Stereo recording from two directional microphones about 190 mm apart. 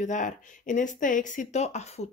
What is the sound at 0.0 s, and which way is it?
Speech, 40° left (ahead or behind).